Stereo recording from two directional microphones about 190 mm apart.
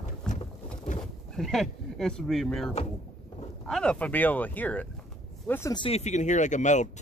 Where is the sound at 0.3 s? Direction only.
40° left (ahead or behind).